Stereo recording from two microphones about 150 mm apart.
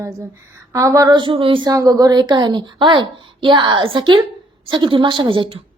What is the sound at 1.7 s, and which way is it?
A woman's voice, 20° right (ahead or behind).